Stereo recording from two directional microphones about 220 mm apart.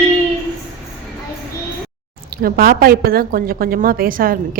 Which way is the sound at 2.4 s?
40° right (ahead or behind).